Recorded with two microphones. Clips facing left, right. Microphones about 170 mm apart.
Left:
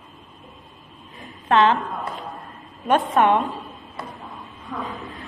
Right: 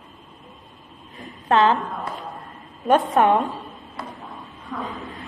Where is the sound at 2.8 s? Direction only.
40° right (ahead or behind).